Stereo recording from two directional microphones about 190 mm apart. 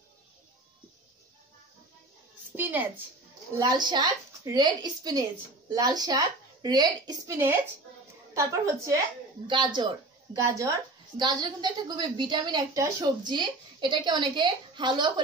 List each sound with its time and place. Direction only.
2.5 s a woman's voice: 10° right (ahead or behind)
3.5 s a woman's voice: 20° right (ahead or behind)